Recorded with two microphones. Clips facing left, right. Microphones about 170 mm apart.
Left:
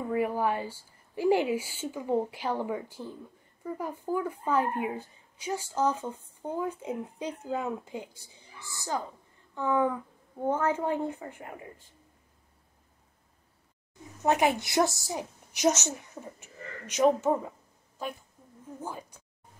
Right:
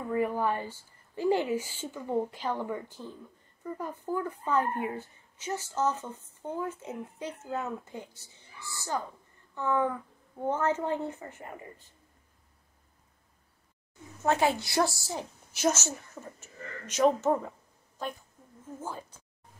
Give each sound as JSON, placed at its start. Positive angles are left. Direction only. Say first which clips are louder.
{"t": 0.1, "sound": "a woman's voice", "louder": "even", "side_deg": 10}
{"t": 14.2, "sound": "a woman's voice", "louder": "left 1 dB", "side_deg": 15}
{"t": 18.8, "sound": "a woman's voice", "louder": "even", "side_deg": 15}